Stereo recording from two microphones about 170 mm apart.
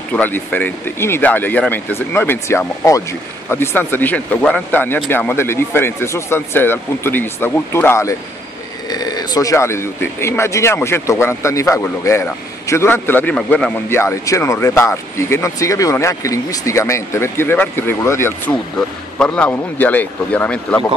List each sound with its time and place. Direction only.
0.1 s speech: 10° left (ahead or behind)
13.9 s speech: 15° left (ahead or behind)